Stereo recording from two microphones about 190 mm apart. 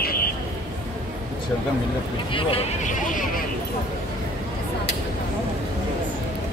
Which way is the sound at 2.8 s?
45° left (ahead or behind).